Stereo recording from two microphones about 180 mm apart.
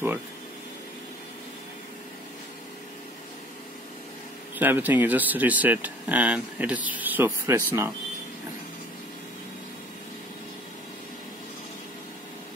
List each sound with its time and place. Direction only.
4.6 s speech: 10° right (ahead or behind)